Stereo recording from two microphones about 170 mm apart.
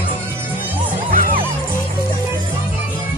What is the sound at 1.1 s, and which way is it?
Music, 55° right (ahead or behind).